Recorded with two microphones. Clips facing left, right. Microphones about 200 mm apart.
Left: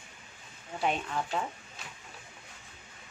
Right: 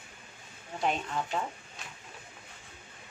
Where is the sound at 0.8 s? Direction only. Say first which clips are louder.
Even; centre (ahead or behind).